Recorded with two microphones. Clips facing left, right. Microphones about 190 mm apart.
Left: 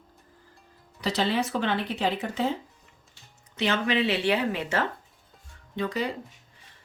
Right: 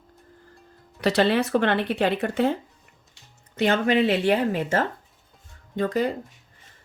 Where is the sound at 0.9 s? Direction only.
65° right (ahead or behind).